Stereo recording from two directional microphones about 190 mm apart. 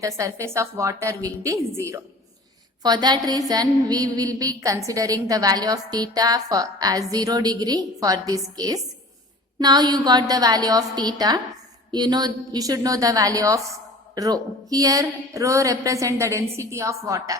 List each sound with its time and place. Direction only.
0.2 s a woman's voice: 15° right (ahead or behind)